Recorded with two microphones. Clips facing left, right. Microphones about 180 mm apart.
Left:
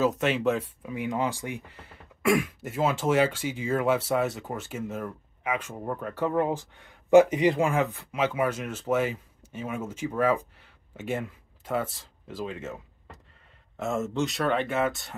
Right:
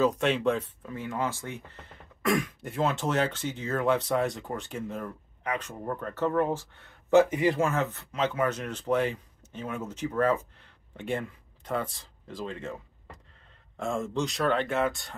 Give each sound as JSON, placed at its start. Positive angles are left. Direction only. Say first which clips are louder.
{"t": 0.0, "sound": "speech", "louder": "even", "side_deg": 0}